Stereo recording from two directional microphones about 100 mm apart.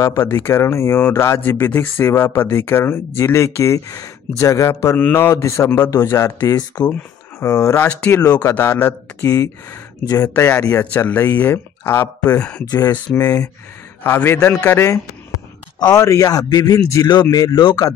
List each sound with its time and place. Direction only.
0.0 s speech: 30° left (ahead or behind)
6.5 s speech: 45° left (ahead or behind)
7.3 s speech: 30° left (ahead or behind)
7.7 s speech: 20° left (ahead or behind); by 10.3 s 40° left (ahead or behind)
10.3 s speech: 25° left (ahead or behind)
12.6 s speech: 40° left (ahead or behind)
12.9 s speech: 15° left (ahead or behind)
14.4 s speech: 10° left (ahead or behind)
15.8 s speech: 35° left (ahead or behind)